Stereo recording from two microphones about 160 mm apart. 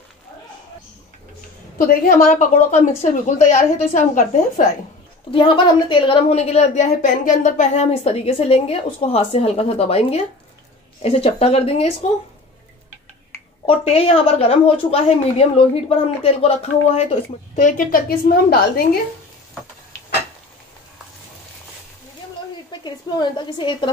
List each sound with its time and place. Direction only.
1.8 s a woman's voice: 55° left (ahead or behind)
5.3 s a woman's voice: 30° left (ahead or behind)
13.7 s a woman's voice: 40° left (ahead or behind); by 18.9 s 70° left (ahead or behind)
22.7 s a woman's voice: 30° left (ahead or behind)